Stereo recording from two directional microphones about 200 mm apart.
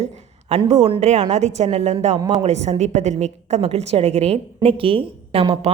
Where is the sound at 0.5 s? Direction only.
35° right (ahead or behind).